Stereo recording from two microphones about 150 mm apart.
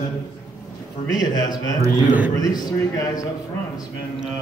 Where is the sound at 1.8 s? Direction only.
10° right (ahead or behind).